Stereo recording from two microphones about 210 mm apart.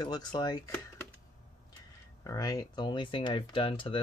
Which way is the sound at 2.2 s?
15° left (ahead or behind).